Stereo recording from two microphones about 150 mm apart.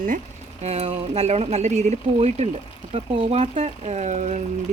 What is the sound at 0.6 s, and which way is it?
Speech, 45° right (ahead or behind).